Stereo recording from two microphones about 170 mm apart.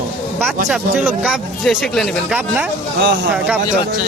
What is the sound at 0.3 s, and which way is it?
Speech, centre (ahead or behind).